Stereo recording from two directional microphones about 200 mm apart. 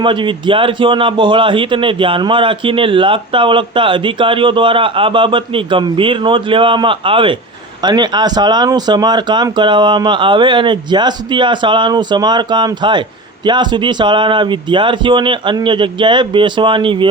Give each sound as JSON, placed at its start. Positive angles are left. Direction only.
{"t": 0.0, "sound": "speech", "side_deg": -25}